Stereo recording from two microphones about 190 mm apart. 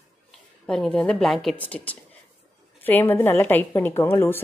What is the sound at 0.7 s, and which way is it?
A woman's voice, 5° left (ahead or behind).